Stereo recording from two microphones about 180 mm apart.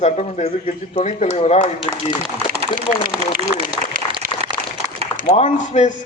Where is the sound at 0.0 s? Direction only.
40° left (ahead or behind).